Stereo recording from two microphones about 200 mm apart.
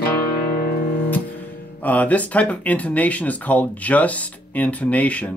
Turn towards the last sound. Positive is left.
turn(degrees=5)  # may be behind; listen again after turning